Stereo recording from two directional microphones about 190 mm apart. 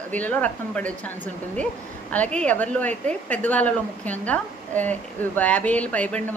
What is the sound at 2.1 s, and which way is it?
A woman's voice, 5° left (ahead or behind).